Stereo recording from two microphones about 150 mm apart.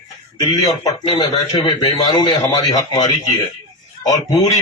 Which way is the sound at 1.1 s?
30° left (ahead or behind).